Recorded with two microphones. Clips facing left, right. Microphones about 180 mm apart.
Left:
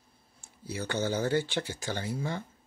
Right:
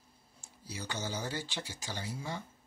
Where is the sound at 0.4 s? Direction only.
55° left (ahead or behind).